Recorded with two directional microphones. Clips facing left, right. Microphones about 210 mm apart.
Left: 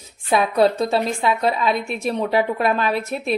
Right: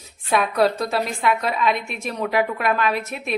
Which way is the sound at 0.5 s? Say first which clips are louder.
Left 4 dB; 25° left (ahead or behind).